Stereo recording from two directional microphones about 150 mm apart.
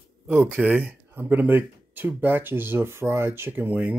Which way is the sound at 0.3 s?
10° right (ahead or behind).